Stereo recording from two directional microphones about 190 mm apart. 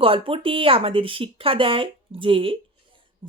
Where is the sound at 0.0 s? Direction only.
30° right (ahead or behind).